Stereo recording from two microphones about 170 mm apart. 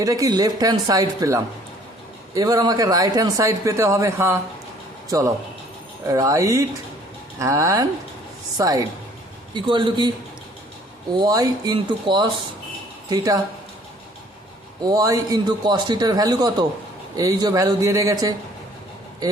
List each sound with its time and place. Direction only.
0.0 s speech: 20° right (ahead or behind)
11.2 s speech: 20° right (ahead or behind)
14.8 s speech: 20° right (ahead or behind)